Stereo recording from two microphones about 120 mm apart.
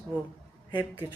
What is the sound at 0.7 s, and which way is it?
Speech, 40° left (ahead or behind).